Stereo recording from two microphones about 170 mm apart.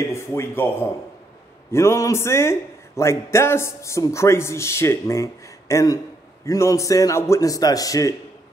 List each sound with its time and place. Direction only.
0.1 s a man's voice: 15° left (ahead or behind)